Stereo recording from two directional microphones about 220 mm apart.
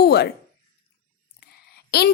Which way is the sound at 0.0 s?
50° left (ahead or behind).